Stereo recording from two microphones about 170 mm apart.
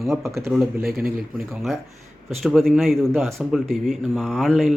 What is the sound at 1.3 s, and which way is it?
Speech, centre (ahead or behind).